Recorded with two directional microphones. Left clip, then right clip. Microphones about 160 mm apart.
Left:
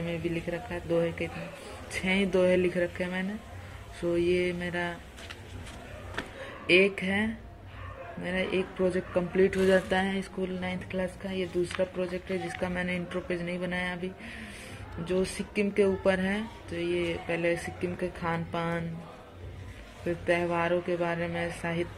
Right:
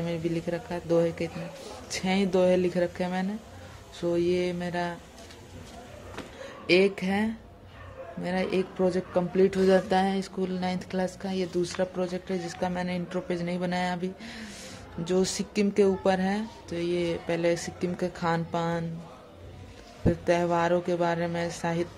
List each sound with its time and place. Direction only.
0.0 s speech: 35° right (ahead or behind)
2.0 s speech: 20° right (ahead or behind)
6.7 s speech: 25° right (ahead or behind)
10.4 s speech: 35° right (ahead or behind)
12.6 s speech: 15° right (ahead or behind)
13.3 s speech: 30° right (ahead or behind)
16.7 s speech: 35° right (ahead or behind)
20.2 s speech: 35° right (ahead or behind)